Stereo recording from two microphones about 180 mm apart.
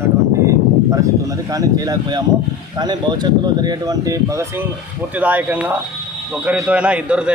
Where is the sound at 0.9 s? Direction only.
20° right (ahead or behind).